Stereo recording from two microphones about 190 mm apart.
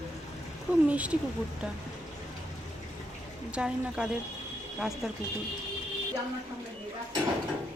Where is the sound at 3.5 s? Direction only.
5° right (ahead or behind).